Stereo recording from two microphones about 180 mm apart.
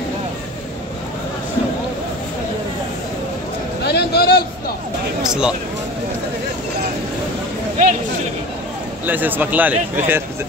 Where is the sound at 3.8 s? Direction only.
65° left (ahead or behind).